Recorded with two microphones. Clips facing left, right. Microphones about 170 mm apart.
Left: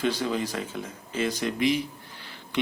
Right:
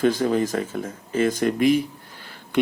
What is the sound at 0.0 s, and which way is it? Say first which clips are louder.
Speech: right 7 dB; 50° right (ahead or behind).